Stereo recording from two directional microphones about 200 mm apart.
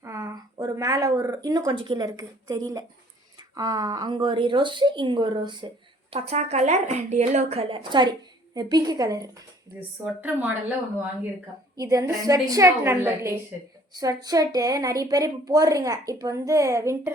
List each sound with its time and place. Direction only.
0.0 s a sound: 15° right (ahead or behind)
1.5 s a woman's voice: 20° right (ahead or behind)
11.8 s a woman's voice: 15° right (ahead or behind)